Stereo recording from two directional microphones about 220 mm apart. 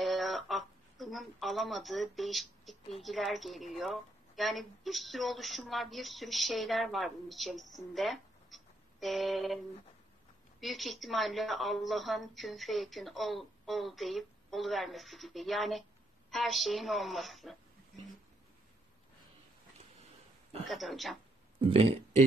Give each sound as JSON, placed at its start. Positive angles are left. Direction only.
{"t": 0.0, "sound": "a sound", "side_deg": 0}
{"t": 3.0, "sound": "a woman's voice", "side_deg": 0}
{"t": 10.6, "sound": "a woman's voice", "side_deg": 0}
{"t": 20.6, "sound": "a woman's voice", "side_deg": 0}
{"t": 21.5, "sound": "speech", "side_deg": -25}